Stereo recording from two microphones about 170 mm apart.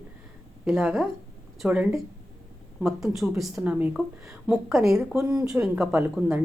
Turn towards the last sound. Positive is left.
turn(degrees=-10)  # may be behind; listen again after turning